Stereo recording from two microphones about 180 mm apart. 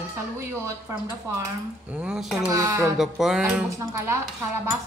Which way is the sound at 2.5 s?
20° right (ahead or behind).